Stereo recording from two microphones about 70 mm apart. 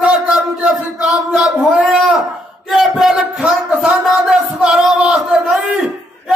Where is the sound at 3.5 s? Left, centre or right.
Centre.